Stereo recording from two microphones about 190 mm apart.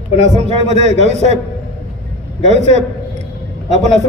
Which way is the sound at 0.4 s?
35° right (ahead or behind).